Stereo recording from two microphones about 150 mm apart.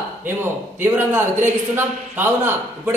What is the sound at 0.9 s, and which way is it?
A man's voice, 15° right (ahead or behind).